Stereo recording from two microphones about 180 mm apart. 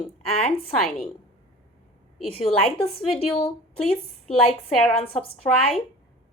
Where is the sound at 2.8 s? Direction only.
30° left (ahead or behind).